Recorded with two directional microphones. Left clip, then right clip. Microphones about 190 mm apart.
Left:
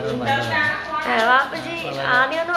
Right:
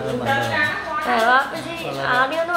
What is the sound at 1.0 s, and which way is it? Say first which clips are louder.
A woman's voice: even; 5° left (ahead or behind).